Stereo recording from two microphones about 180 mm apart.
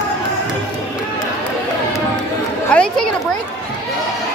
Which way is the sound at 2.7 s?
5° left (ahead or behind).